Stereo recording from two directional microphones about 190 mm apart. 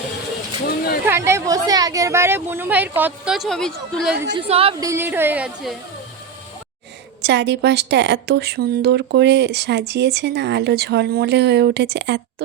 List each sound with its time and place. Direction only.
1.0 s speech: 15° right (ahead or behind); by 4.1 s 5° left (ahead or behind)
4.4 s a woman's voice: 30° right (ahead or behind)
4.8 s speech: 15° right (ahead or behind)
7.2 s speech: 65° right (ahead or behind)